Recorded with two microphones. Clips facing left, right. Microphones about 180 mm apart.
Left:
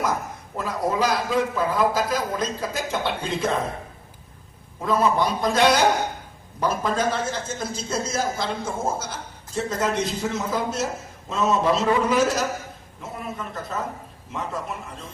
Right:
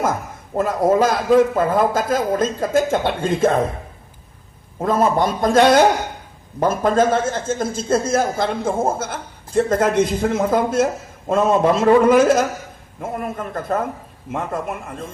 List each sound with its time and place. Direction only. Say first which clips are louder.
0.5 s a man's voice: right 9 dB; 50° right (ahead or behind)
4.8 s a man's voice: right 4 dB; 50° right (ahead or behind)